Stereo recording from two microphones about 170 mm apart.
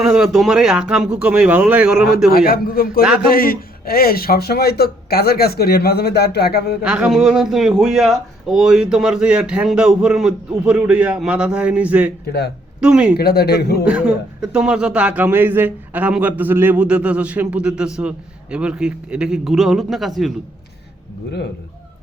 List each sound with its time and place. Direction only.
0.0 s a man's voice: 5° right (ahead or behind)
2.3 s a man's voice: 60° left (ahead or behind)
6.8 s a man's voice: 5° right (ahead or behind)
13.1 s a man's voice: 70° left (ahead or behind)
13.8 s a man's voice: 5° right (ahead or behind)